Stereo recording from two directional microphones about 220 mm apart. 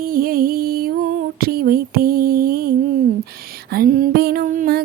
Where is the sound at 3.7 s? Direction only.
40° right (ahead or behind).